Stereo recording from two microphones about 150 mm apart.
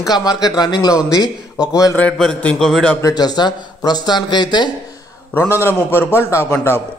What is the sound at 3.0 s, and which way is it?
Speech, 25° left (ahead or behind).